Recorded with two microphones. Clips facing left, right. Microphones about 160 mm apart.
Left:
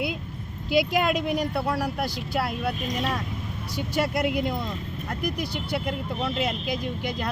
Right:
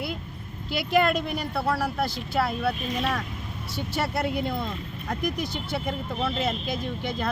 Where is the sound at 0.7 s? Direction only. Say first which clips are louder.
Even; 15° left (ahead or behind).